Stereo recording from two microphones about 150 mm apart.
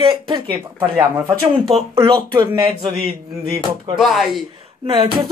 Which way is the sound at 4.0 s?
Centre (ahead or behind).